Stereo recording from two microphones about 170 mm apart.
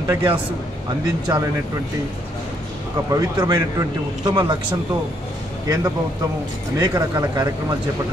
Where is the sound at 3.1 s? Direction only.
20° right (ahead or behind).